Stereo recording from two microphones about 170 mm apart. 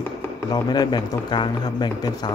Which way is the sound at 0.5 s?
25° left (ahead or behind).